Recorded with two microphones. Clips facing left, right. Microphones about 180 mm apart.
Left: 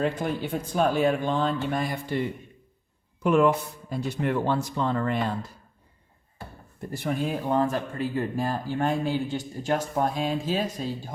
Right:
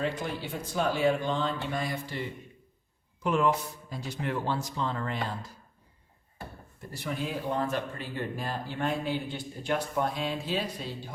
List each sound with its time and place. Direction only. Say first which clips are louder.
0.0 s speech: left 5 dB; 50° left (ahead or behind)
3.2 s speech: left 6 dB; 55° left (ahead or behind)
6.9 s speech: left 6 dB; 50° left (ahead or behind)